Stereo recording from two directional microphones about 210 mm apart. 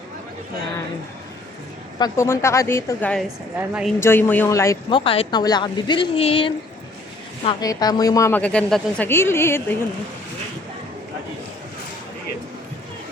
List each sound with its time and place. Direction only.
2.0 s a woman's voice: 15° left (ahead or behind); by 3.9 s 5° right (ahead or behind)
4.0 s a woman's voice: 10° left (ahead or behind)